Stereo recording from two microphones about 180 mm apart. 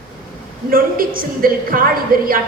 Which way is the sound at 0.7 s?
50° right (ahead or behind).